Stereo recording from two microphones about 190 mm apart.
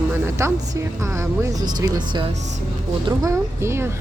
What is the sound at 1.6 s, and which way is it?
Speech, 20° right (ahead or behind).